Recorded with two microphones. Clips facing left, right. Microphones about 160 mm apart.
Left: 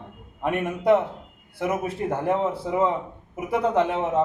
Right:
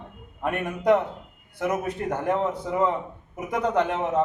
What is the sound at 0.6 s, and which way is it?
Speech, 5° left (ahead or behind).